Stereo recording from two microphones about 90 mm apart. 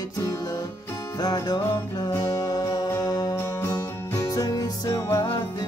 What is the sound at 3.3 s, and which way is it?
Music, 25° left (ahead or behind).